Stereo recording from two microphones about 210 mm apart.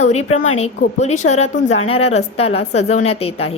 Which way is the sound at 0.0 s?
30° left (ahead or behind).